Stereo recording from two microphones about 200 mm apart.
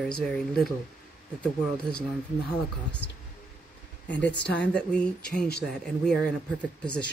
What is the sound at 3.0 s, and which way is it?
Speech, 60° left (ahead or behind).